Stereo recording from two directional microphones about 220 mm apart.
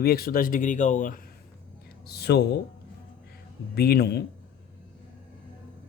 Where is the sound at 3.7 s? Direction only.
45° left (ahead or behind).